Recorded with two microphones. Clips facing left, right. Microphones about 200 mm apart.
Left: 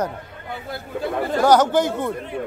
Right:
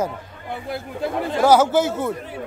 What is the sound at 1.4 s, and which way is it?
Speech, 5° right (ahead or behind).